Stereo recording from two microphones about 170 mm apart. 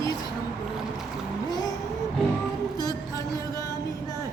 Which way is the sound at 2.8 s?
20° left (ahead or behind).